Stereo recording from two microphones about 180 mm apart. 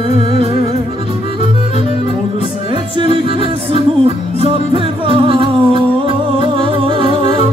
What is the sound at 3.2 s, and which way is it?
Music, 30° right (ahead or behind).